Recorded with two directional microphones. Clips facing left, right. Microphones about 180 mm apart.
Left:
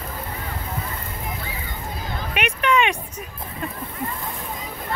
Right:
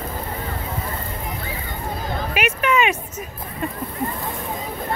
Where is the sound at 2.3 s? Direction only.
5° right (ahead or behind).